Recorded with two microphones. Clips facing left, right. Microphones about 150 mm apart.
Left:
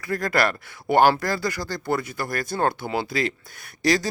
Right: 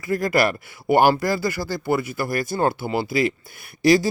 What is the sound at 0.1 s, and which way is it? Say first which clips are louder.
Speech: right 3 dB; 5° right (ahead or behind).